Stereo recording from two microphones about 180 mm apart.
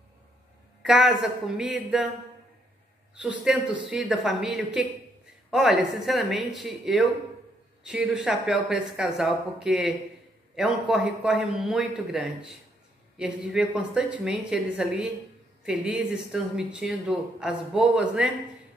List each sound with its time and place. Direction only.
0.8 s speech: 5° right (ahead or behind)
3.2 s speech: 5° right (ahead or behind)